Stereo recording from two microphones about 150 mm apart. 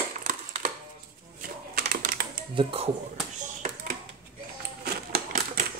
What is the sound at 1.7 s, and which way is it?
Typing, 80° right.